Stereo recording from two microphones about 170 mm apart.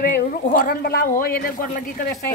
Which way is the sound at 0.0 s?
55° left (ahead or behind).